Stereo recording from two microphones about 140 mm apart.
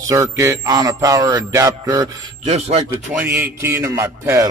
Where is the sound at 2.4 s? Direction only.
55° right (ahead or behind).